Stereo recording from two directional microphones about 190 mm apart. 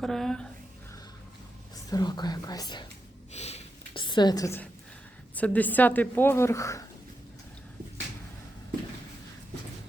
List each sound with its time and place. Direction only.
0.0 s speech: centre (ahead or behind)
1.7 s speech: 20° left (ahead or behind)
3.3 s a sound: 35° left (ahead or behind); by 4.7 s 15° left (ahead or behind)
5.3 s speech: 10° left (ahead or behind)